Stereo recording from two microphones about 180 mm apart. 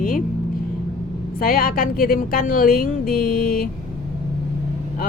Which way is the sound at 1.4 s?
55° left (ahead or behind).